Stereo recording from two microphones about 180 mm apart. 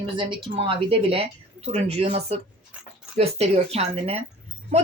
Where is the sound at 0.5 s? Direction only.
30° right (ahead or behind).